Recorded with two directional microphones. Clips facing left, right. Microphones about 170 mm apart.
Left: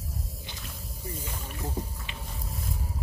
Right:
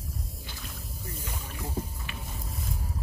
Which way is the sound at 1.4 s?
15° left (ahead or behind).